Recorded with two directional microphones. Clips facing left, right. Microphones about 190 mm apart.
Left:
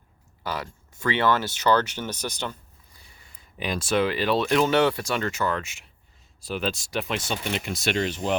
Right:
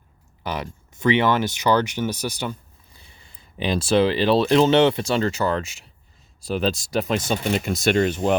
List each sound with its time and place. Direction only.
0.4 s speech: 20° right (ahead or behind)
2.9 s speech: 25° right (ahead or behind); by 8.4 s 50° right (ahead or behind)